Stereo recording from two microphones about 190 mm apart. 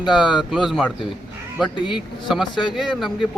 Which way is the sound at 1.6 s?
25° left (ahead or behind).